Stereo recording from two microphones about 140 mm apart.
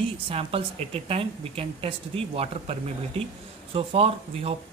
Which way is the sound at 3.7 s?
45° right (ahead or behind).